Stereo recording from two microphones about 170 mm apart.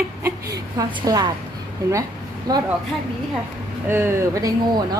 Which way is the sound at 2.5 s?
25° right (ahead or behind).